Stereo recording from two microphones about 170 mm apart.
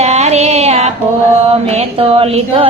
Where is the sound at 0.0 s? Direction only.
40° right (ahead or behind).